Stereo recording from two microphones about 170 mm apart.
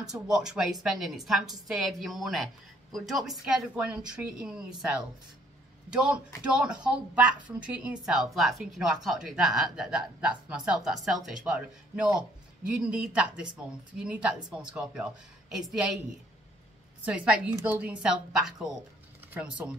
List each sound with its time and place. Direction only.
0.0 s speech: 5° right (ahead or behind)
17.0 s a woman's voice: 10° right (ahead or behind)